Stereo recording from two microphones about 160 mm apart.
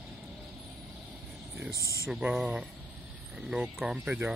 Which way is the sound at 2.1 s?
5° right (ahead or behind).